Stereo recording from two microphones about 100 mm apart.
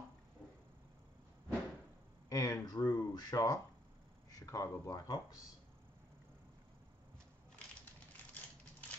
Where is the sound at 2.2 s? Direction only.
30° left (ahead or behind).